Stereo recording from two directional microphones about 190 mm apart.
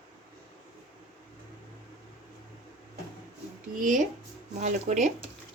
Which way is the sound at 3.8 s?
40° right (ahead or behind).